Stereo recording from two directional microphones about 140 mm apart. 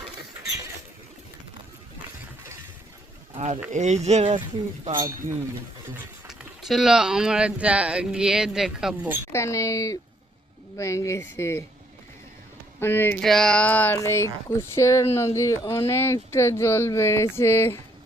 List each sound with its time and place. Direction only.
3.3 s speech: 45° right (ahead or behind)
3.7 s speech: 55° right (ahead or behind)
6.2 s speech: 5° right (ahead or behind)
9.3 s speech: 20° left (ahead or behind)
12.8 s speech: 15° left (ahead or behind)
13.2 s speech: 5° left (ahead or behind)